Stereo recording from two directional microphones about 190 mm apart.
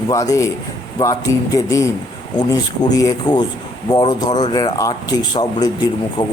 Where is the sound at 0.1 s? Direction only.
15° left (ahead or behind).